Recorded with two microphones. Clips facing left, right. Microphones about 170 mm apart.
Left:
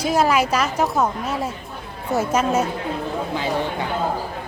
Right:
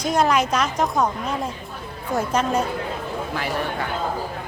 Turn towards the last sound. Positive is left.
turn(degrees=20)  # may be behind; listen again after turning